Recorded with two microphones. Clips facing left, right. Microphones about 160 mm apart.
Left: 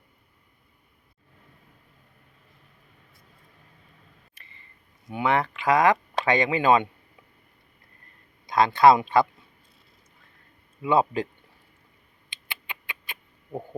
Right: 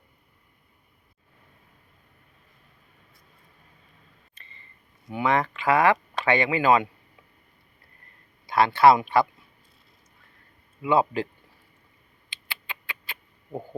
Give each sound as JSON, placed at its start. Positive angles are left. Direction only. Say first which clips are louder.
{"t": 5.0, "sound": "speech", "louder": "even", "side_deg": 15}
{"t": 8.4, "sound": "speech", "louder": "even", "side_deg": 20}
{"t": 10.8, "sound": "speech", "louder": "even", "side_deg": 20}
{"t": 12.3, "sound": "a sound", "louder": "even", "side_deg": 20}